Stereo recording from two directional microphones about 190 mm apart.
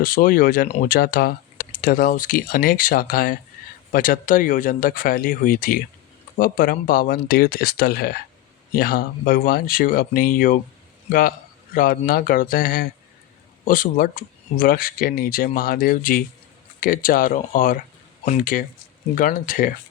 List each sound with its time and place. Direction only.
0.0 s speech: 50° left (ahead or behind)